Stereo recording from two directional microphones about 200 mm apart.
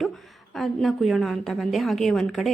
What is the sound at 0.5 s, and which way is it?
Speech, centre (ahead or behind).